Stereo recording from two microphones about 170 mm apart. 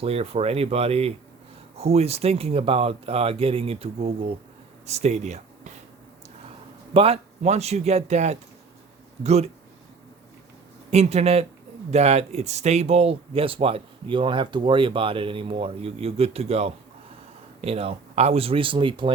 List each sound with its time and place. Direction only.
0.0 s speech: 35° right (ahead or behind)
6.9 s speech: 35° right (ahead or behind)
10.9 s speech: 40° right (ahead or behind)